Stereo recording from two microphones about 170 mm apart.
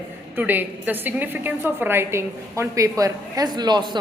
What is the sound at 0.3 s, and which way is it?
A woman's voice, 10° right (ahead or behind).